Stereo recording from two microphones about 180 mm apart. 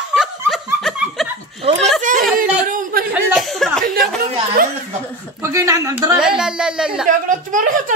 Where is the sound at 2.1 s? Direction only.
45° right (ahead or behind).